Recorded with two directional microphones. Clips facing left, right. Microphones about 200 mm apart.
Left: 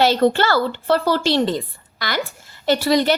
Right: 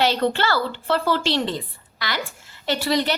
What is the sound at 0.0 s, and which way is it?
A woman's voice, 40° left (ahead or behind).